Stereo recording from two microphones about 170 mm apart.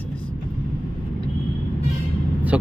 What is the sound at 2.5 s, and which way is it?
Speech, 5° right (ahead or behind).